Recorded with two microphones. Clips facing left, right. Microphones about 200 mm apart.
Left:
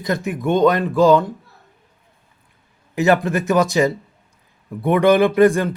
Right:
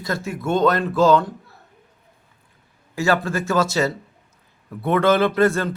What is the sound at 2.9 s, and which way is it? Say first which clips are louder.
Speech: left 4 dB; 20° left (ahead or behind).